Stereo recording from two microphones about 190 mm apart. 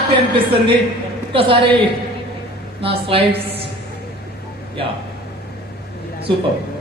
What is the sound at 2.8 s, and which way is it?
Speech, 30° right (ahead or behind).